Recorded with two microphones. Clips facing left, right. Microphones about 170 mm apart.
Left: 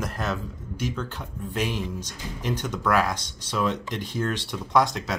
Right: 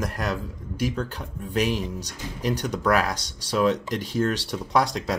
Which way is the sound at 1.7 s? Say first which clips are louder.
Right 3 dB; 40° right (ahead or behind).